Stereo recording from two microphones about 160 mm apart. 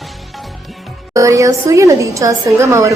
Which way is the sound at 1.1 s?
20° right (ahead or behind).